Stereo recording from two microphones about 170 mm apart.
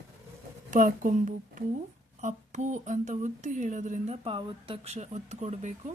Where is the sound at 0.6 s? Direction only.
50° right (ahead or behind).